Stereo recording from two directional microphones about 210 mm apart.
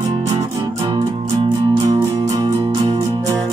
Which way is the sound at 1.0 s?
15° right (ahead or behind).